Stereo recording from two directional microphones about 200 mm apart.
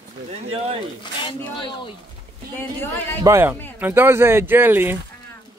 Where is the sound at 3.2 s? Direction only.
15° right (ahead or behind).